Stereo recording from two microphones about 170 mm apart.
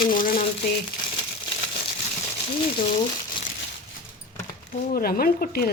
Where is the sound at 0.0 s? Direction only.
55° left (ahead or behind).